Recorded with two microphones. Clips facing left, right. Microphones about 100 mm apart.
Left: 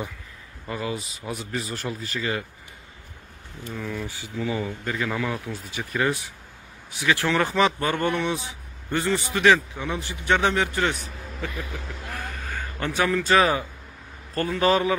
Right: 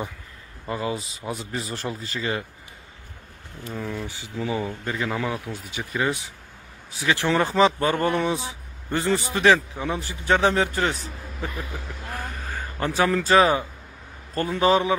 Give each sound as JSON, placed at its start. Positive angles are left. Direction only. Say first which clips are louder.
{"t": 0.7, "sound": "speech", "louder": "right 2 dB", "side_deg": -25}
{"t": 3.8, "sound": "speech", "louder": "left 1 dB", "side_deg": -20}
{"t": 6.9, "sound": "a man's voice", "louder": "right 1 dB", "side_deg": -30}
{"t": 12.1, "sound": "a sound", "louder": "right 1 dB", "side_deg": -30}
{"t": 14.3, "sound": "speech", "louder": "right 1 dB", "side_deg": -25}